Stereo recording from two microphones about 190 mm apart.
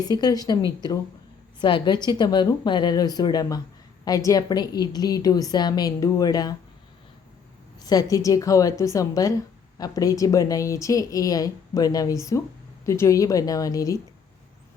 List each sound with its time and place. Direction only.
0.0 s a woman's voice: 20° left (ahead or behind)
7.8 s a sound: 20° left (ahead or behind)
8.1 s a woman's voice: 15° left (ahead or behind)